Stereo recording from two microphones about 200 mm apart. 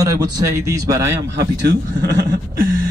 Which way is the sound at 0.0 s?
15° right (ahead or behind).